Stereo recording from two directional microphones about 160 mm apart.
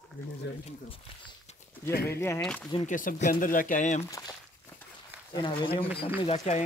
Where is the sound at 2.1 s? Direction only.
15° left (ahead or behind).